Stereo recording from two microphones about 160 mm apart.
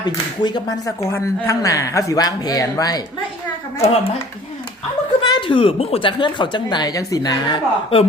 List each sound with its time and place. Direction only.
0.0 s speech: 25° left (ahead or behind)
3.8 s a woman's voice: 40° left (ahead or behind)
5.3 s speech: 30° left (ahead or behind)